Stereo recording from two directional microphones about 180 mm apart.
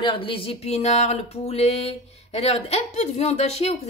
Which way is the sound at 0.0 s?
30° left (ahead or behind).